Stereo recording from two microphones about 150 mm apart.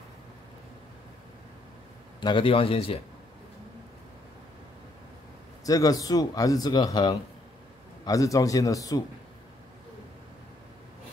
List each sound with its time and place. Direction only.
2.1 s speech: 30° left (ahead or behind)
5.7 s speech: 25° left (ahead or behind)